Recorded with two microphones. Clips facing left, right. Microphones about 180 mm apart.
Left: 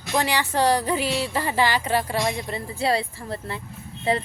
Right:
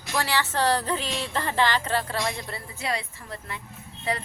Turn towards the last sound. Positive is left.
turn(degrees=25)  # may be behind; listen again after turning